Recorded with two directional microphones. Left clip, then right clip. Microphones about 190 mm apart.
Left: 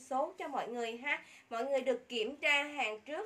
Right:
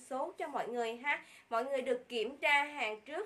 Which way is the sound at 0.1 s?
20° right (ahead or behind).